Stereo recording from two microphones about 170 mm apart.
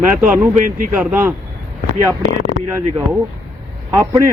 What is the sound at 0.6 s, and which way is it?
Speech, 55° right (ahead or behind).